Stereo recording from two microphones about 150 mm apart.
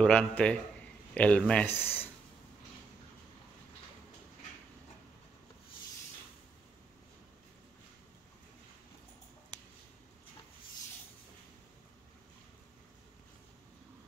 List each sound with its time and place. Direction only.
0.0 s a man's voice: 5° left (ahead or behind)